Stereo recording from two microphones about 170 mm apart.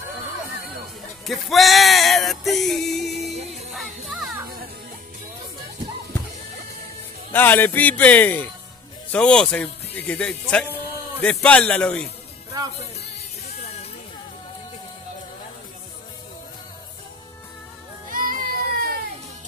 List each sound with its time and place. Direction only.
1.2 s music: centre (ahead or behind)
3.3 s music: 40° right (ahead or behind)
3.7 s music: centre (ahead or behind)
7.3 s a man's voice: 10° left (ahead or behind)
18.1 s a sound: 55° right (ahead or behind)